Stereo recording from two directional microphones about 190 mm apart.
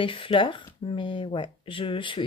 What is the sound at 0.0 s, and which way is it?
Speech, 25° left (ahead or behind).